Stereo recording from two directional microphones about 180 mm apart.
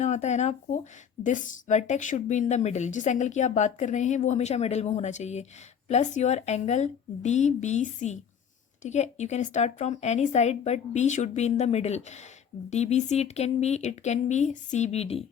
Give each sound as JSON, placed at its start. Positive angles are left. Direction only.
{"t": 0.0, "sound": "a woman's voice", "side_deg": 40}